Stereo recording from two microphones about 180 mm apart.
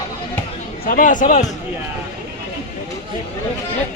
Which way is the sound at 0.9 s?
50° left (ahead or behind).